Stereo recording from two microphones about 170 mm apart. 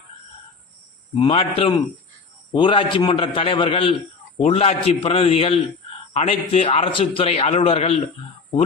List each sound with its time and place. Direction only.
1.1 s a man's voice: 35° left (ahead or behind)